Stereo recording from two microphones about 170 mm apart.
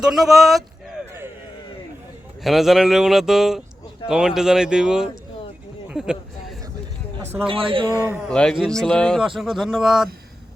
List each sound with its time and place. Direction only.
0.0 s speech: centre (ahead or behind)
2.4 s speech: centre (ahead or behind)
7.4 s a man's voice: 30° right (ahead or behind)
8.3 s speech: 5° left (ahead or behind)